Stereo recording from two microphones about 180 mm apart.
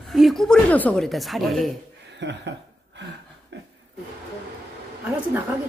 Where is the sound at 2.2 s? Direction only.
75° right (ahead or behind).